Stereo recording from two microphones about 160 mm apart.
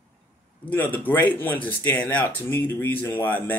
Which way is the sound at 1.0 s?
10° left (ahead or behind).